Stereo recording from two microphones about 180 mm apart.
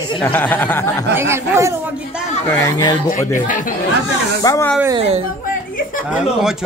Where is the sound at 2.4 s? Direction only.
15° left (ahead or behind).